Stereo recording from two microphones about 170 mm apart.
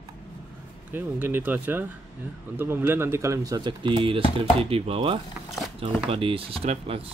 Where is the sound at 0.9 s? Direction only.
10° right (ahead or behind).